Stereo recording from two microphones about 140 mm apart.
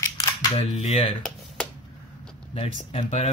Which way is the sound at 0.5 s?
45° left (ahead or behind).